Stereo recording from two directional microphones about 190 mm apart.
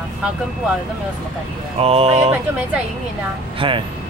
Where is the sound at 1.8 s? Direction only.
30° right (ahead or behind).